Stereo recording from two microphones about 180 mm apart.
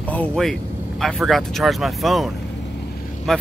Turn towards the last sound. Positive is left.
turn(degrees=0)  # may be behind; listen again after turning